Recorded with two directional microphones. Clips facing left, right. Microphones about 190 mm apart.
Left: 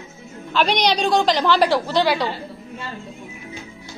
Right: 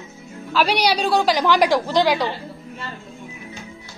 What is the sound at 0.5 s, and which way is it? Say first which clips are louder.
A woman's voice: even; 10° right (ahead or behind).